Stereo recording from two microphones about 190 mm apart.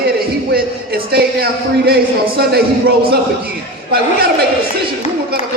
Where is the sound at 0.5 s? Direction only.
55° right (ahead or behind).